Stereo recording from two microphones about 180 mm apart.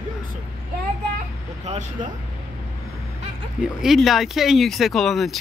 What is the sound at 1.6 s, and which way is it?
Speech, 40° right (ahead or behind).